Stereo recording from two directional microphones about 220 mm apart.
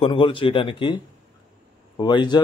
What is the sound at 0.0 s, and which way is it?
Speech, 25° left (ahead or behind).